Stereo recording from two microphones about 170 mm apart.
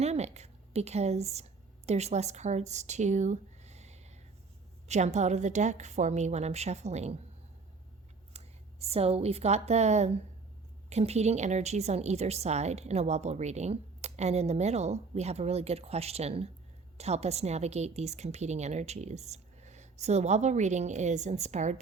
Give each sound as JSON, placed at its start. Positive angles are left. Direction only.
{"t": 0.0, "sound": "a woman's voice", "side_deg": -40}
{"t": 8.4, "sound": "a sound", "side_deg": -40}
{"t": 8.8, "sound": "a woman's voice", "side_deg": -35}